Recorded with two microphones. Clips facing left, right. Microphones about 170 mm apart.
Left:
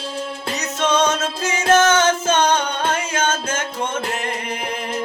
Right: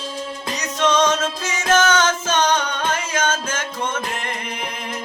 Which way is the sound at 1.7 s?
30° left (ahead or behind).